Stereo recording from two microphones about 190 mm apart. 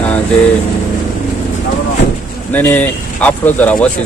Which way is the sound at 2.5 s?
10° left (ahead or behind).